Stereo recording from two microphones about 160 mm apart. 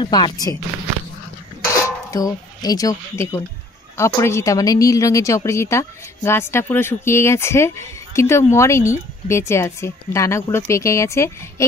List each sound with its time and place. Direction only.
0.0 s speech: 25° left (ahead or behind)
1.9 s speech: 20° left (ahead or behind)